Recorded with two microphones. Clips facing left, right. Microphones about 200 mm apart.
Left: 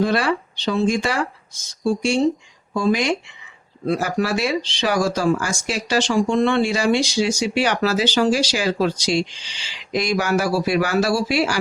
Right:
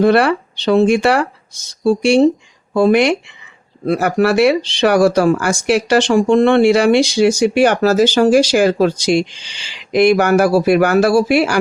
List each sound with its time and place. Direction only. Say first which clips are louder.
0.0 s speech: right 8 dB; 65° right (ahead or behind)